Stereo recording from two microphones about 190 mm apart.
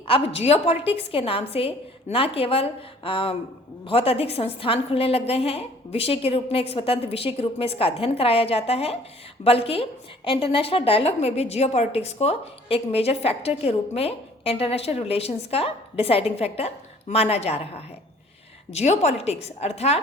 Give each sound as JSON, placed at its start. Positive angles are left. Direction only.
{"t": 0.3, "sound": "a woman's voice", "side_deg": 35}